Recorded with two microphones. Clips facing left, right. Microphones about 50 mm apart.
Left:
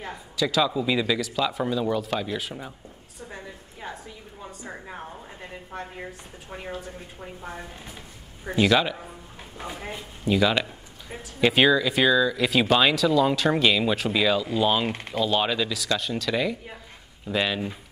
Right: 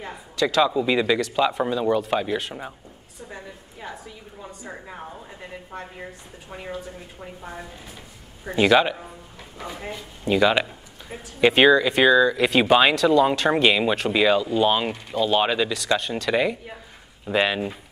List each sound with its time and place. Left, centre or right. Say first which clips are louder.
0.0 s a sound: right 3 dB; centre
0.6 s speech: right 4 dB; centre
4.4 s a sound: right 1 dB; centre
7.2 s a woman's voice: even; centre
8.5 s speech: right 3 dB; centre
10.2 s speech: right 3 dB; centre
12.9 s a woman's voice: right 4 dB; centre
13.5 s speech: right 2 dB; centre